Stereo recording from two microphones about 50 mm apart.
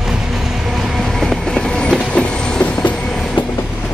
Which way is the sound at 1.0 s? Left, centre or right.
Centre.